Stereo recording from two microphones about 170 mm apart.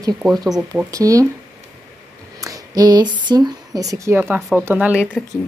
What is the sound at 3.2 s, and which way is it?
Speech, 25° right (ahead or behind).